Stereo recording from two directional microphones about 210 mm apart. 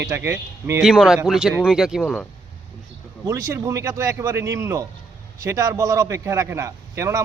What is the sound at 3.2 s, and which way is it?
A man's voice, 15° right (ahead or behind).